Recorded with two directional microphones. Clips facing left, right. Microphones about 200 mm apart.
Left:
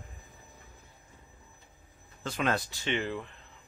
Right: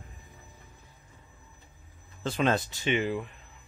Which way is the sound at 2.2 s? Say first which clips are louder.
Right 4 dB; 30° right (ahead or behind).